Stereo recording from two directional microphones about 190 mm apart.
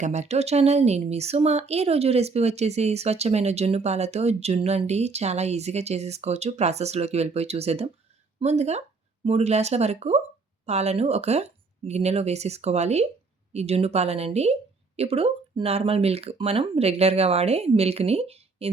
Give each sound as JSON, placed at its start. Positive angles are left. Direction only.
{"t": 0.0, "sound": "a woman's voice", "side_deg": -35}